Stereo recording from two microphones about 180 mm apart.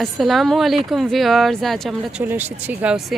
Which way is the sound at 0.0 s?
Centre (ahead or behind).